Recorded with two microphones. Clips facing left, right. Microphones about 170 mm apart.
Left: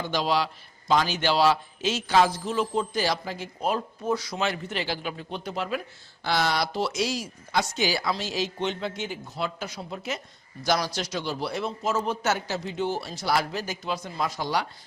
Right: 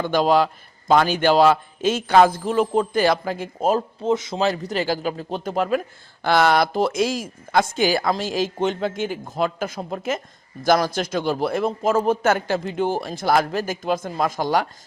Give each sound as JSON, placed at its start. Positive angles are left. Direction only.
{"t": 0.0, "sound": "a man's voice", "side_deg": -55}
{"t": 4.0, "sound": "speech", "side_deg": -25}
{"t": 4.4, "sound": "a man's voice", "side_deg": -35}